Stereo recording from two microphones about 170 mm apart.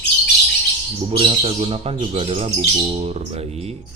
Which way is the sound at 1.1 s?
35° right (ahead or behind).